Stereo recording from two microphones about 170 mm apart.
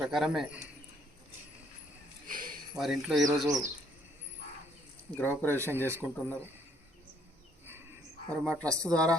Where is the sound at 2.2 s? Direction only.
55° right (ahead or behind).